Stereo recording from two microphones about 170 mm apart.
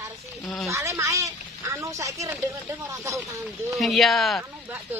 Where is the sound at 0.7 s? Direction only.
15° right (ahead or behind).